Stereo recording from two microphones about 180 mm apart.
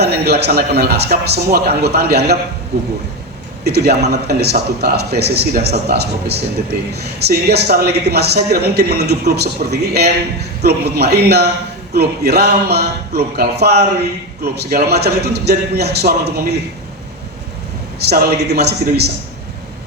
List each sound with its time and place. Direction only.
0.0 s a man's voice: 65° right (ahead or behind)
3.6 s a man's voice: 65° right (ahead or behind)
18.1 s a man's voice: 65° right (ahead or behind)